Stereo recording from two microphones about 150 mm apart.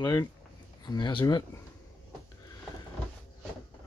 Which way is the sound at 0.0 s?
25° left (ahead or behind).